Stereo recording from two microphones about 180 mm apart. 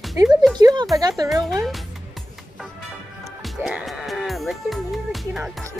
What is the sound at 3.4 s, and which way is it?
Speech, centre (ahead or behind).